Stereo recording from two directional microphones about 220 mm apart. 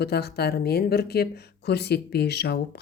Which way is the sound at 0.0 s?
45° left (ahead or behind).